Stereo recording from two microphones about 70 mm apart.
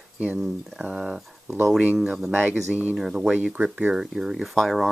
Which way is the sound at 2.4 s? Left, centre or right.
Right.